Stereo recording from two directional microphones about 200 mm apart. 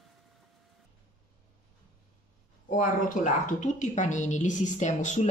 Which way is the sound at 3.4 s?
40° left (ahead or behind).